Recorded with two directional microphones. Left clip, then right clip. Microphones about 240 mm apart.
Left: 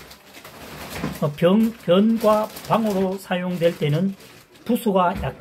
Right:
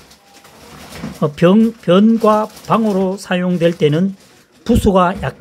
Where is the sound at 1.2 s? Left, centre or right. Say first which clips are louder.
Right 7 dB; right.